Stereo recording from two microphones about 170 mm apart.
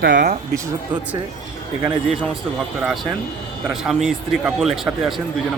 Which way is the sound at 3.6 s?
5° right (ahead or behind).